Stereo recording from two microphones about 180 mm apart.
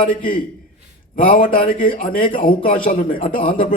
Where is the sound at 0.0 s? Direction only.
50° left (ahead or behind).